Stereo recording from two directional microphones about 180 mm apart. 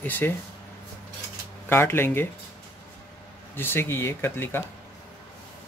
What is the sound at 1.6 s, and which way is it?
Speech, 15° left (ahead or behind).